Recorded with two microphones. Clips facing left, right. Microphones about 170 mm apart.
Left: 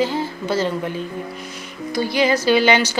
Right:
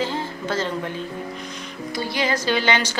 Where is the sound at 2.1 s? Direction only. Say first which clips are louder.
Left 6 dB; 10° left (ahead or behind).